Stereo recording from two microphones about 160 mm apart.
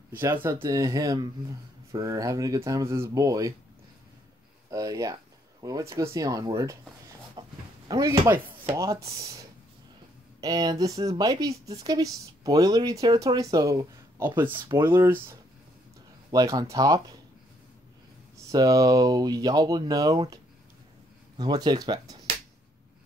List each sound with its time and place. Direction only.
0.1 s speech: 15° right (ahead or behind)
4.6 s speech: 20° right (ahead or behind)
7.4 s dog: 25° right (ahead or behind)
7.9 s speech: 20° right (ahead or behind)
16.3 s speech: 20° right (ahead or behind)
18.5 s speech: 20° right (ahead or behind)
21.4 s speech: 25° right (ahead or behind)